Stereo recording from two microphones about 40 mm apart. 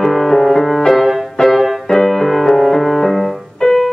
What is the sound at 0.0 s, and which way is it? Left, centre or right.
Music, centre.